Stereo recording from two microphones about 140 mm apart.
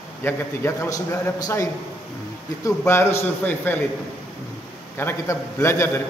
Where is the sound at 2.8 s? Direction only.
15° left (ahead or behind).